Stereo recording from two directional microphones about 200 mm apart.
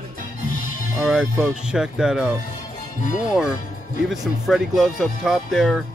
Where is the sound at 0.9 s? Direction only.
5° right (ahead or behind).